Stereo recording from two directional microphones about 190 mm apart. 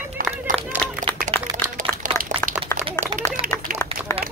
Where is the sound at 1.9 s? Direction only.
50° right (ahead or behind).